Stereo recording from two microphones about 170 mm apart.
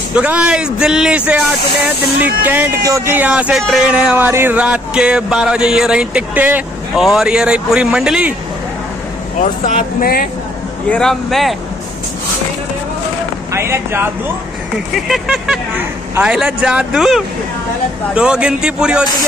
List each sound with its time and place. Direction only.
0.1 s speech: 10° right (ahead or behind)
9.9 s speech: 60° left (ahead or behind)
10.9 s speech: 5° left (ahead or behind)
13.5 s speech: 15° right (ahead or behind)
15.0 s speech: centre (ahead or behind)